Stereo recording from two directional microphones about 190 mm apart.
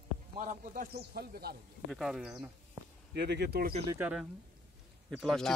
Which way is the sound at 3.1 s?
60° right (ahead or behind).